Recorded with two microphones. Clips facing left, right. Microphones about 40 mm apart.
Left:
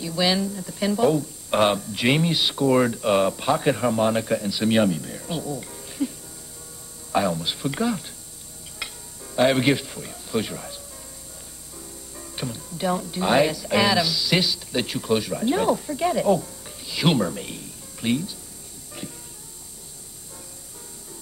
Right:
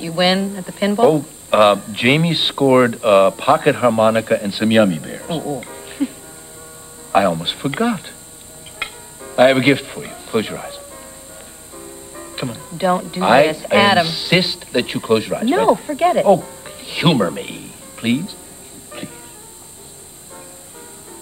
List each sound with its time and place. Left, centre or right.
0.0 s speech: right
8.7 s music: right
11.7 s speech: right
19.0 s music: right